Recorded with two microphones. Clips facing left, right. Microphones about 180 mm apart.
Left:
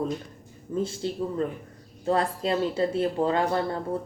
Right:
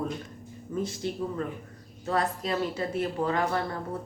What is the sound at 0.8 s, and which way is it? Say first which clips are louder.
Speech: left 3 dB; 30° left (ahead or behind).